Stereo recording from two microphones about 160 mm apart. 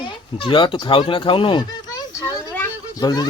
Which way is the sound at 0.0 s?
30° left (ahead or behind).